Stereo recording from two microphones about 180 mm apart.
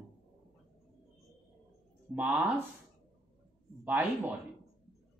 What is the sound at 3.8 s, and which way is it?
Speech, 10° right (ahead or behind).